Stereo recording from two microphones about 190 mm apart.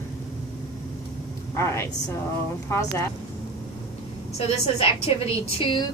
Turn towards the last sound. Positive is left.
turn(degrees=25)  # may be behind; listen again after turning